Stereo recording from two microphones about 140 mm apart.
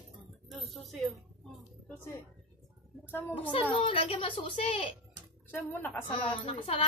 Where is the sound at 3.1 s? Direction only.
15° left (ahead or behind).